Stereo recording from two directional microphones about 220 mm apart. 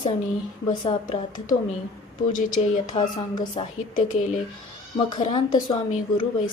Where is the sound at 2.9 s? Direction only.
20° left (ahead or behind).